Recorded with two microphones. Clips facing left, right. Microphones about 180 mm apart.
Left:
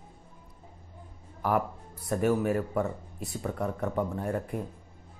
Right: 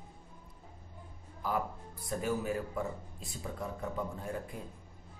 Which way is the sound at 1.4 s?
65° left (ahead or behind).